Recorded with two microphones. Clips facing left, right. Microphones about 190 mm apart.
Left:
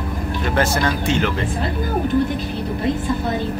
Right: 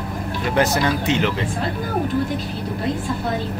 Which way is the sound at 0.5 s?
15° right (ahead or behind).